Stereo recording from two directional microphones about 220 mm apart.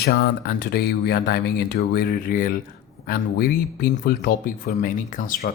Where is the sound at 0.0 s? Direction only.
45° left (ahead or behind).